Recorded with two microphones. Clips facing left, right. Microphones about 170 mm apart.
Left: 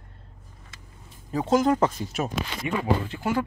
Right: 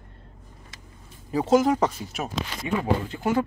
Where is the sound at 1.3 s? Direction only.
5° right (ahead or behind).